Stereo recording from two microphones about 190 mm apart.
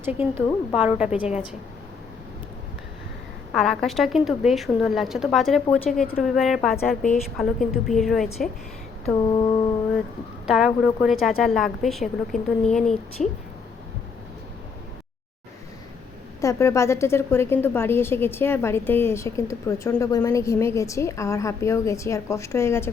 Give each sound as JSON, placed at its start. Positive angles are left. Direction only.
{"t": 0.0, "sound": "a woman's voice", "side_deg": -10}
{"t": 3.5, "sound": "speech", "side_deg": 0}
{"t": 9.1, "sound": "mantra", "side_deg": 20}
{"t": 10.4, "sound": "speech", "side_deg": -5}
{"t": 16.4, "sound": "a woman's voice", "side_deg": 15}